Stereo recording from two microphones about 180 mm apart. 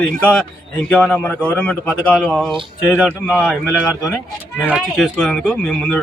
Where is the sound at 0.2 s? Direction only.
5° left (ahead or behind).